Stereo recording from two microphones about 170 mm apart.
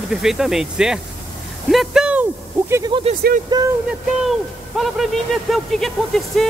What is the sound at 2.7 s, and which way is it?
Speech, 25° right (ahead or behind).